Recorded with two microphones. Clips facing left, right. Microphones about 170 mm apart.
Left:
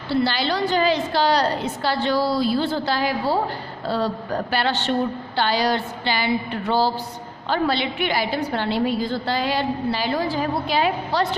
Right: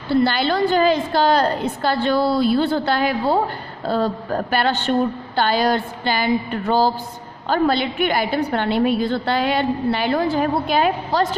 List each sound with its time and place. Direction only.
0.1 s a woman's voice: 55° right (ahead or behind)